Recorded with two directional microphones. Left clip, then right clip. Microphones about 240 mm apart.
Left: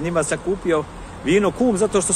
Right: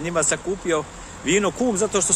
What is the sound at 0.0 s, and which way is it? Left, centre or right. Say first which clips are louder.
Speech: left 2 dB; centre.